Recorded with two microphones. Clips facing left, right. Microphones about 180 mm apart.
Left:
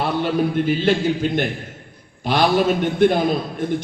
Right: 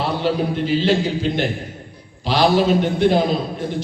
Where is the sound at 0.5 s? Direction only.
50° left (ahead or behind).